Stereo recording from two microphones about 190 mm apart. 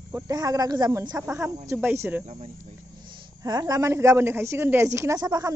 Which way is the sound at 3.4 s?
20° right (ahead or behind).